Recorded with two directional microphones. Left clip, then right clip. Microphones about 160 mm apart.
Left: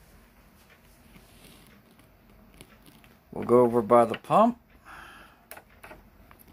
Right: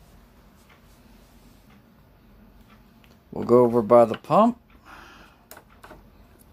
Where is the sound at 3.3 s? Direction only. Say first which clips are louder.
Right 3 dB; 20° right (ahead or behind).